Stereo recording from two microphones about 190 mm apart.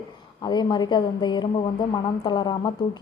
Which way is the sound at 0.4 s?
25° left (ahead or behind).